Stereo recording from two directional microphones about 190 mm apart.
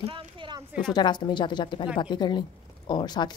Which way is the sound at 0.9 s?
25° left (ahead or behind).